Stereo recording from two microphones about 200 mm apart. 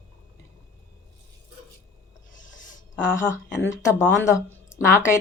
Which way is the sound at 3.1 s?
15° left (ahead or behind).